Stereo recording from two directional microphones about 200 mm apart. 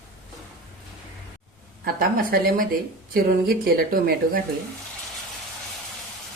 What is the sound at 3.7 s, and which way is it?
Speech, 50° right (ahead or behind).